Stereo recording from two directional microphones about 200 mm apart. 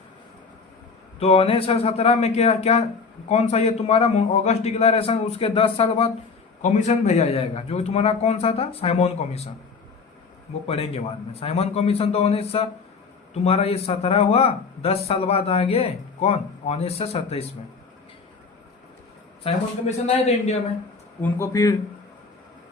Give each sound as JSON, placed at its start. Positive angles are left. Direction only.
{"t": 1.2, "sound": "a man's voice", "side_deg": 30}
{"t": 10.7, "sound": "speech", "side_deg": 30}
{"t": 20.1, "sound": "a man's voice", "side_deg": 30}
{"t": 21.2, "sound": "speech", "side_deg": 10}